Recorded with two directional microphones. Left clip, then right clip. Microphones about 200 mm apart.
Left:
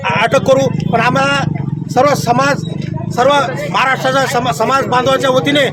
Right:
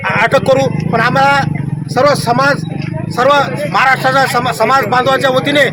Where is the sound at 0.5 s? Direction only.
30° left (ahead or behind).